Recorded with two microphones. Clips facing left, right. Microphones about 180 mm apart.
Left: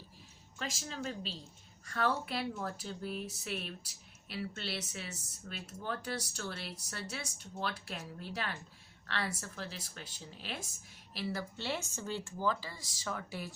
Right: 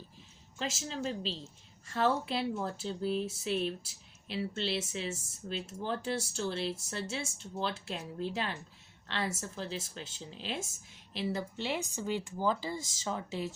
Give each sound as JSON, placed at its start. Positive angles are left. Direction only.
{"t": 0.6, "sound": "speech", "side_deg": -30}